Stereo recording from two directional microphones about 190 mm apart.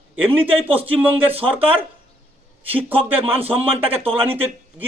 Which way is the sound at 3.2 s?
30° right (ahead or behind).